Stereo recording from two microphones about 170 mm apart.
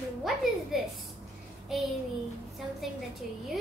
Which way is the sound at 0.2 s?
Centre (ahead or behind).